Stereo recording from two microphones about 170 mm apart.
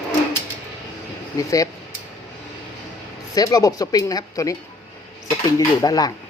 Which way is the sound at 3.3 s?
20° left (ahead or behind).